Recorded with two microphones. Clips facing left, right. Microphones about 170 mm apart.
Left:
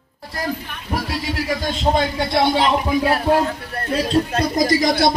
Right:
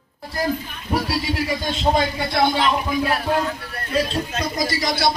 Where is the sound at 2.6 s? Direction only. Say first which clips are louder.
Left 3 dB; 35° left (ahead or behind).